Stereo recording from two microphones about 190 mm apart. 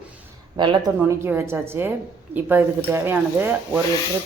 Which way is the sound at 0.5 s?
25° right (ahead or behind).